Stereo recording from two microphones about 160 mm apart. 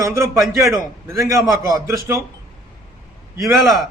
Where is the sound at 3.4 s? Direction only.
Centre (ahead or behind).